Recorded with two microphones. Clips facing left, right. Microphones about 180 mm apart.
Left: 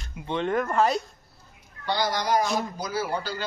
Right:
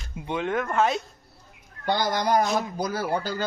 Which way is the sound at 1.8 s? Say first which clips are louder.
Right 2 dB; 50° right (ahead or behind).